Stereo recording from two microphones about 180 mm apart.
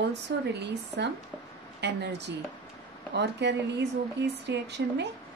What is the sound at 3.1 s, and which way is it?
A woman's voice, 70° right (ahead or behind).